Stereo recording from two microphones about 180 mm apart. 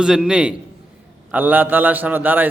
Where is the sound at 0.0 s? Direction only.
5° right (ahead or behind).